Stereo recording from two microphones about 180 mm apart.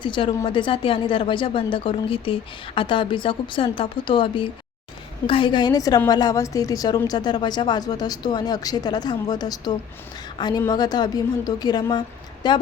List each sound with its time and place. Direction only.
0.0 s a woman's voice: 25° left (ahead or behind)